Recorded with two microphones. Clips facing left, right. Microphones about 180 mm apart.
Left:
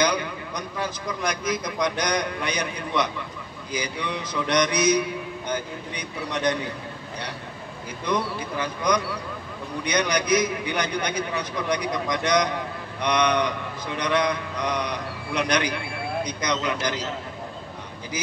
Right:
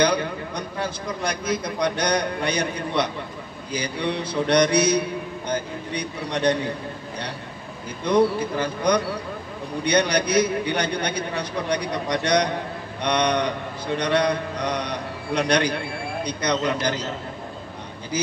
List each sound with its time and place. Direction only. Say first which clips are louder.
0.0 s a sound: right 3 dB; 30° right (ahead or behind)
1.2 s a man's voice: right 1 dB; 30° right (ahead or behind)
8.1 s a man's voice: right 7 dB; 35° right (ahead or behind)